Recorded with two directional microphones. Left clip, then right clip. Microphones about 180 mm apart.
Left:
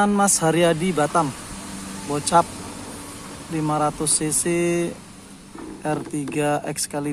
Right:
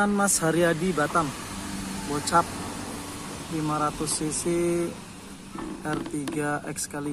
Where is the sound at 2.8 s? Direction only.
40° left (ahead or behind).